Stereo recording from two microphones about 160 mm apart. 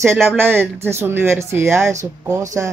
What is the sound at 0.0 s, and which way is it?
Speech, 15° right (ahead or behind).